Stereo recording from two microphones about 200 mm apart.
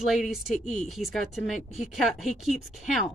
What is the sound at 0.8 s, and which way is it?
Speech, centre (ahead or behind).